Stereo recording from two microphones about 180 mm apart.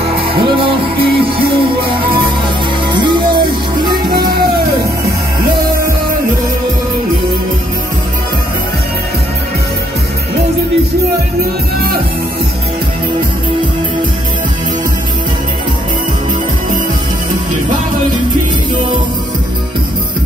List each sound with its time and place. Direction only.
0.0 s music: 30° right (ahead or behind)